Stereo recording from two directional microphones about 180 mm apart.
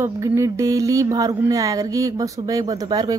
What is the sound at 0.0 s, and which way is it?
Speech, 15° right (ahead or behind).